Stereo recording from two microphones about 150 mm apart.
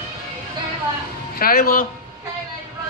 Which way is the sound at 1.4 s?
80° left.